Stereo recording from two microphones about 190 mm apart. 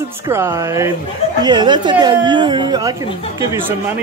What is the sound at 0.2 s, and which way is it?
A woman's voice, 15° right (ahead or behind).